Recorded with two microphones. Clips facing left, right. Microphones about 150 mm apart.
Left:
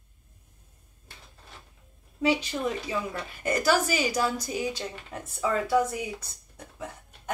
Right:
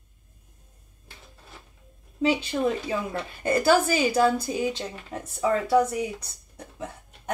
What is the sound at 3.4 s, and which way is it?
A woman's voice, 30° right (ahead or behind).